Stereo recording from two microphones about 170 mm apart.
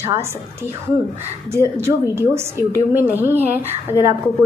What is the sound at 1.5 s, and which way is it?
A woman's voice, 15° right (ahead or behind).